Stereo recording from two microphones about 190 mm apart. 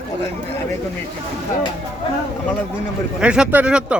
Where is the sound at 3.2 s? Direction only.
5° right (ahead or behind).